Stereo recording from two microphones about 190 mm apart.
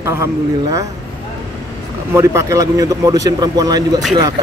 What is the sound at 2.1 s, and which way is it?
Speech, 15° right (ahead or behind).